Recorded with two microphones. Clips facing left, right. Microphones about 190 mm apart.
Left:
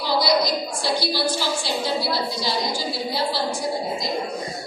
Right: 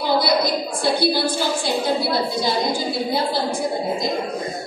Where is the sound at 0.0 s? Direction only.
55° right (ahead or behind).